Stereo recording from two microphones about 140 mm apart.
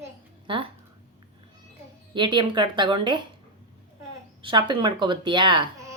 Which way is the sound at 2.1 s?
35° right (ahead or behind).